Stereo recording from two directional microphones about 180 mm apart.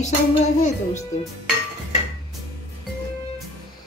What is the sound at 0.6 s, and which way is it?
Speech, 40° left (ahead or behind).